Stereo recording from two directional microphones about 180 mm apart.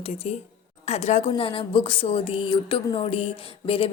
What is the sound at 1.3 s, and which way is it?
Speech, 30° left (ahead or behind).